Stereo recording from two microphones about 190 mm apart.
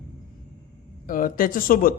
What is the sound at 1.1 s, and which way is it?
Speech, 45° left (ahead or behind).